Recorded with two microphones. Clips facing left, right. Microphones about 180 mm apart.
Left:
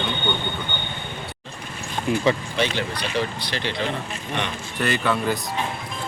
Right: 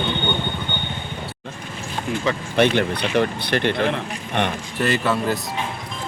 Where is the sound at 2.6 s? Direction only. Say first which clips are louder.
Right 7 dB; 55° right (ahead or behind).